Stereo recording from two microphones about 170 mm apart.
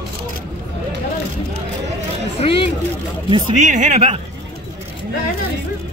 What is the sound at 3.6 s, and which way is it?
Speech, 50° right (ahead or behind).